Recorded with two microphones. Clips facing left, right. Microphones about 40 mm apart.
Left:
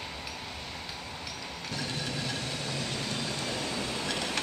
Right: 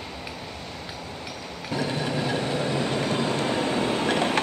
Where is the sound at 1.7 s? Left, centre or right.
Centre.